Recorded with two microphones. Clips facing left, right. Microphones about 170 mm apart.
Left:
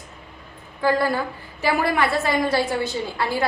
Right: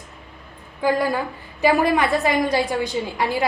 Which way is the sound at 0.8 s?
15° right (ahead or behind).